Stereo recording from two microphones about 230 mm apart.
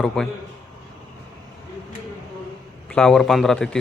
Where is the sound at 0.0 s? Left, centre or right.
Centre.